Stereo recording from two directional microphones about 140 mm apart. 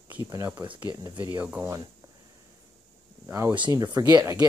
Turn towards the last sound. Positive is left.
turn(degrees=-25)  # may be behind; listen again after turning